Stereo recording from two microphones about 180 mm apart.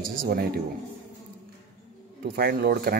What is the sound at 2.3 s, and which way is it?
Speech, 60° right (ahead or behind).